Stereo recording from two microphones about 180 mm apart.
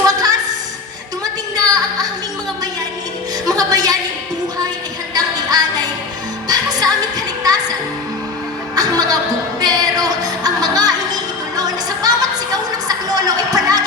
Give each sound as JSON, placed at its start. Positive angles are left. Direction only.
{"t": 0.0, "sound": "a sound", "side_deg": -20}
{"t": 3.4, "sound": "music", "side_deg": -20}
{"t": 5.1, "sound": "music", "side_deg": -20}
{"t": 8.7, "sound": "music", "side_deg": -20}